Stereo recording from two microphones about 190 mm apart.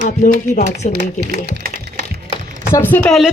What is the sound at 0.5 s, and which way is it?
Speech, 35° left (ahead or behind).